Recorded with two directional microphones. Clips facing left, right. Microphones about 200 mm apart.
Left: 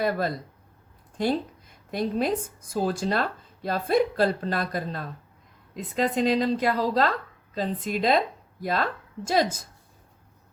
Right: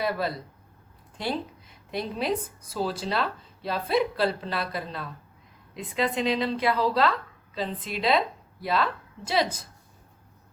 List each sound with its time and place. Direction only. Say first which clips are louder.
0.0 s speech: left 2 dB; 45° left (ahead or behind)